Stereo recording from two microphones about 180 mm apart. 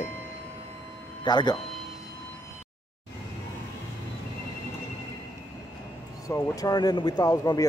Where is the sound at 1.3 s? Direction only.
25° left (ahead or behind).